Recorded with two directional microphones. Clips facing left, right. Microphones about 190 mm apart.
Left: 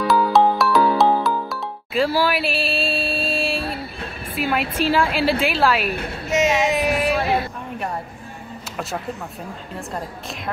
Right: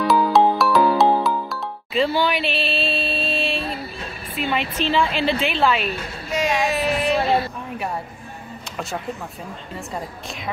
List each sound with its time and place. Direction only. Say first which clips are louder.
0.0 s music: even; centre (ahead or behind)
4.4 s a woman's voice: left 2 dB; 5° left (ahead or behind)
6.3 s a sound: left 3 dB; 20° left (ahead or behind)